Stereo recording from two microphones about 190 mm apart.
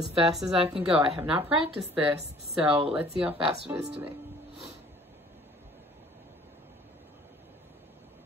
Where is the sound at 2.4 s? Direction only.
30° right (ahead or behind).